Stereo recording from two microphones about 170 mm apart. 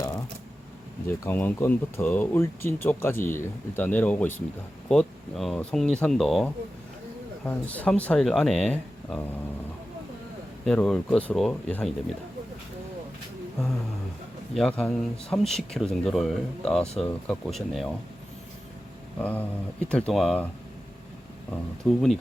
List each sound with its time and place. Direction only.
1.0 s speech: 10° left (ahead or behind)
10.7 s speech: 5° left (ahead or behind)
14.5 s speech: 5° left (ahead or behind)
19.2 s speech: 10° left (ahead or behind)
21.5 s speech: centre (ahead or behind)